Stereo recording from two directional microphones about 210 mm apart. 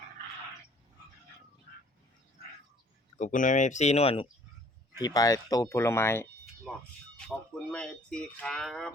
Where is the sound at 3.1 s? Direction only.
35° left (ahead or behind).